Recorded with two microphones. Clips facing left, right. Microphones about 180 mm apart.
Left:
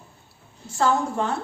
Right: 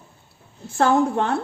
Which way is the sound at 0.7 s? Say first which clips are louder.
Right 4 dB; 60° right (ahead or behind).